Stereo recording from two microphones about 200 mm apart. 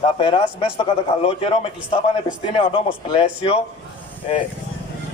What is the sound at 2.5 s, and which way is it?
Speech, 25° left (ahead or behind).